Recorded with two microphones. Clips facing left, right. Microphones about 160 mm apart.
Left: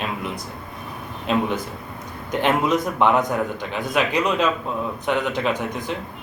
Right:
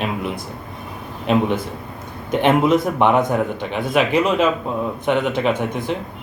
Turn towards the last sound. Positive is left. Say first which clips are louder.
# right 4 dB
turn(degrees=-20)  # may be behind; listen again after turning